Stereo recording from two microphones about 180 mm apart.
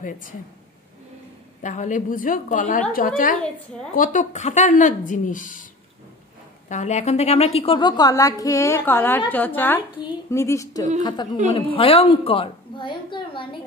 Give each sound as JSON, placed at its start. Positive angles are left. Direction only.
{"t": 1.6, "sound": "speech", "side_deg": 45}
{"t": 6.7, "sound": "a woman's voice", "side_deg": 40}